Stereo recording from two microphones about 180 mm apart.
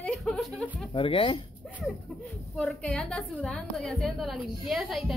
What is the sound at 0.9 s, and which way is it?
Speech, 30° left (ahead or behind).